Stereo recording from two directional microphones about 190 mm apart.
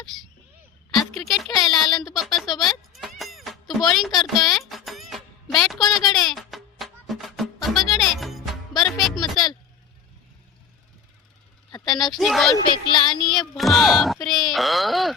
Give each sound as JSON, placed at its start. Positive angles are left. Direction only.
{"t": 0.9, "sound": "a sound", "side_deg": 0}
{"t": 5.5, "sound": "music", "side_deg": 0}
{"t": 12.1, "sound": "speech", "side_deg": 0}
{"t": 12.5, "sound": "speech", "side_deg": 25}
{"t": 13.2, "sound": "speech", "side_deg": 5}